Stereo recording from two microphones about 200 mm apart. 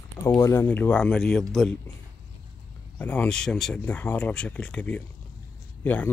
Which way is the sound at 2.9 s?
5° left (ahead or behind).